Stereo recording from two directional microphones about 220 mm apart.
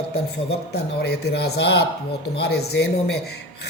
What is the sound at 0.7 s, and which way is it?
Speech, 50° left (ahead or behind).